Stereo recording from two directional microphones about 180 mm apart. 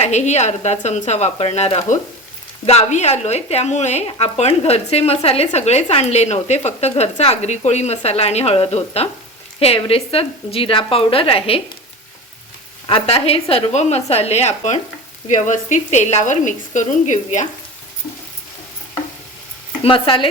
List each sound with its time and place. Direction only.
0.0 s speech: 40° left (ahead or behind)
12.9 s a woman's voice: 35° left (ahead or behind)
19.8 s speech: 30° left (ahead or behind)